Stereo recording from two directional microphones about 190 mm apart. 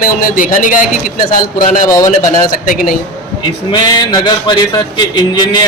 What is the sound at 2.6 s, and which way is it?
Speech, 45° left (ahead or behind).